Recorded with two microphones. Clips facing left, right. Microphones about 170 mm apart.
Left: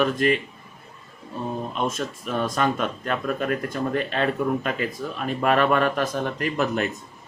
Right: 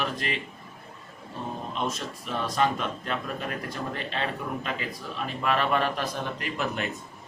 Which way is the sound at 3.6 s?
50° left (ahead or behind).